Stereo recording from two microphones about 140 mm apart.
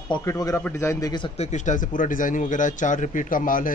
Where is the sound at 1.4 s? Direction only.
55° left (ahead or behind); by 3.7 s 75° left (ahead or behind).